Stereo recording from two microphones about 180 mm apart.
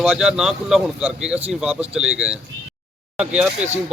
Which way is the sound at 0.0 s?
Centre (ahead or behind).